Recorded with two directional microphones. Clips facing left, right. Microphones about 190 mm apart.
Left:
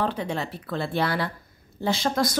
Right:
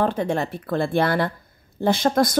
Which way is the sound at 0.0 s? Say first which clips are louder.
Right 5 dB; 50° right (ahead or behind).